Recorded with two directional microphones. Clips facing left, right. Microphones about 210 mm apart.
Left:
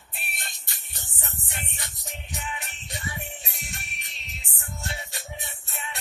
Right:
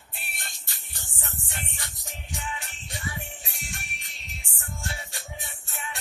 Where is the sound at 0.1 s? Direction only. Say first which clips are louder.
Left 2 dB; 20° left (ahead or behind).